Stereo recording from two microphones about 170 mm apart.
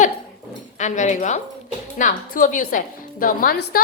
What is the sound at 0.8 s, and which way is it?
A woman's voice, 45° left (ahead or behind).